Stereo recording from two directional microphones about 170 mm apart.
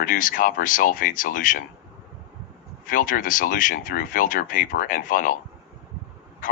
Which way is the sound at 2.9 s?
55° left (ahead or behind).